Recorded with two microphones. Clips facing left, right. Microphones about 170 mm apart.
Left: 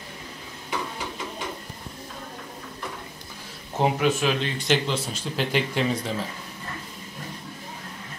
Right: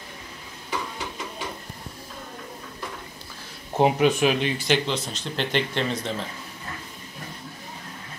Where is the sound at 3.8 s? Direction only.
15° right (ahead or behind).